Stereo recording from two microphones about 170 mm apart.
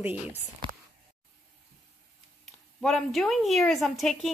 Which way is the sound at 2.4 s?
Centre (ahead or behind).